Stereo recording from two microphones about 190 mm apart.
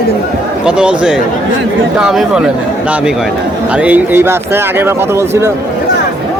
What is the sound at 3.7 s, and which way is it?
Speech, 5° right (ahead or behind).